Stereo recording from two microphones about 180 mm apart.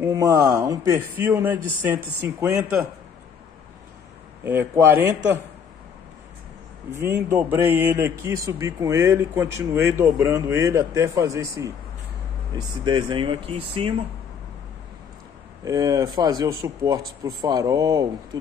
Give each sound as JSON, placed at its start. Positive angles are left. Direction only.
{"t": 0.0, "sound": "speech", "side_deg": -15}
{"t": 4.5, "sound": "speech", "side_deg": -15}
{"t": 6.9, "sound": "speech", "side_deg": -15}
{"t": 15.6, "sound": "speech", "side_deg": -20}